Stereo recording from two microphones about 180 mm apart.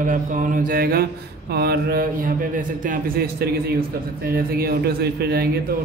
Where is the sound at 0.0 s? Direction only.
45° right (ahead or behind).